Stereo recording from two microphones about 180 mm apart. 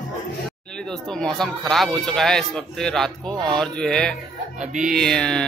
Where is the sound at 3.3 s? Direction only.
25° right (ahead or behind).